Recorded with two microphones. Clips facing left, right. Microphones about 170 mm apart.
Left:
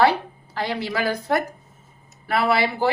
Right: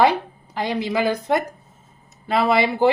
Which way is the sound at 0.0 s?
15° right (ahead or behind).